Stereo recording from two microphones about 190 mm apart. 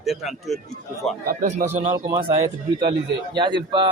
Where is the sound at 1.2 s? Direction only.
45° right (ahead or behind).